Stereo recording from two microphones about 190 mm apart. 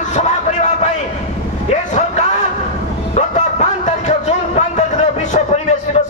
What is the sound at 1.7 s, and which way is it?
Vehicle, 40° left (ahead or behind).